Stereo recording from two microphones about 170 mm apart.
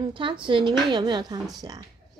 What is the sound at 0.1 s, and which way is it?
Speech, 30° right (ahead or behind).